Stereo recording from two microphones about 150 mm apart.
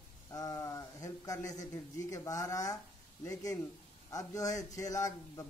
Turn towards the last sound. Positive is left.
turn(degrees=20)  # may be behind; listen again after turning